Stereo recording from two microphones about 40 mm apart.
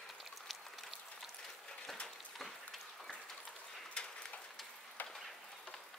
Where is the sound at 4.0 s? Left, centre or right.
Left.